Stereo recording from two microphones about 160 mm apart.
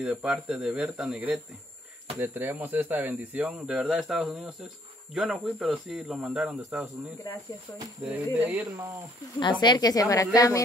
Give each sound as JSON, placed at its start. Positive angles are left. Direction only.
{"t": 0.0, "sound": "speech", "side_deg": -5}
{"t": 8.0, "sound": "speech", "side_deg": -5}
{"t": 9.4, "sound": "a woman's voice", "side_deg": 30}